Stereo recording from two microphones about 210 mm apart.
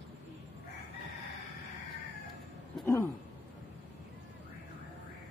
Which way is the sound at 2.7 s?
10° left (ahead or behind).